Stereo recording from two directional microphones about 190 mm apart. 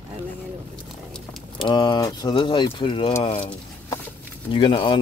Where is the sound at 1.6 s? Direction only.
25° left (ahead or behind).